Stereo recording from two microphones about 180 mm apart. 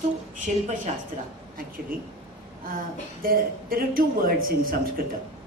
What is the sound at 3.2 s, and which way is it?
A woman's voice, 55° right (ahead or behind).